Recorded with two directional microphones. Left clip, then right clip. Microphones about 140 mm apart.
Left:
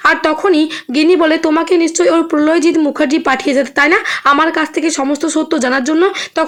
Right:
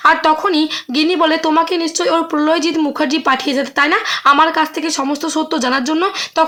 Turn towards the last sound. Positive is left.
turn(degrees=20)  # may be behind; listen again after turning